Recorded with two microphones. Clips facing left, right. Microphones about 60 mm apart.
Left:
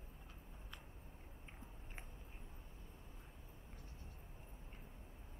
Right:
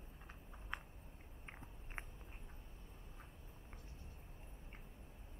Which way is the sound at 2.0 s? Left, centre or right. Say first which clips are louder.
Right 7 dB; right.